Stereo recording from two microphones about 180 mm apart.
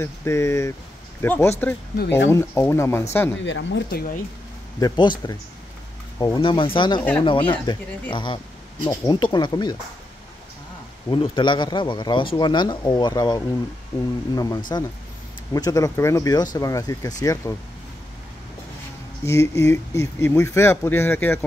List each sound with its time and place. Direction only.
0.0 s speech: 15° left (ahead or behind)
2.0 s speech: 75° left (ahead or behind)
2.3 s speech: 15° left (ahead or behind)
3.4 s speech: 85° left
4.7 s speech: 25° left (ahead or behind)
6.1 s speech: 20° left (ahead or behind)
7.0 s speech: 10° left (ahead or behind)
7.2 s speech: 30° left (ahead or behind)
11.1 s speech: 25° left (ahead or behind)
19.2 s speech: 15° left (ahead or behind)